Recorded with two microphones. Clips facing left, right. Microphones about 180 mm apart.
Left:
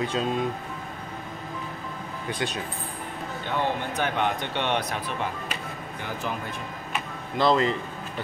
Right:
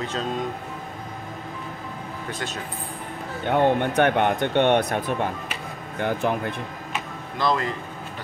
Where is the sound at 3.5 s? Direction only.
60° right (ahead or behind).